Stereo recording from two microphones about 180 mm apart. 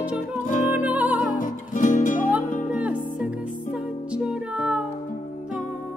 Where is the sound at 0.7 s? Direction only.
10° right (ahead or behind).